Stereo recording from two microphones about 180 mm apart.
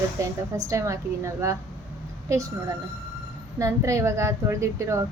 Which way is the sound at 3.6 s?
15° right (ahead or behind).